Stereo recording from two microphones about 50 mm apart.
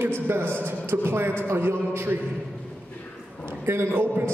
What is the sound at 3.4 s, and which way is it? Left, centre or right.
Speech, right.